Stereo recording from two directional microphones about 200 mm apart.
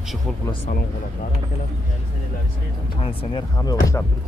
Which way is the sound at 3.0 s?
20° left (ahead or behind).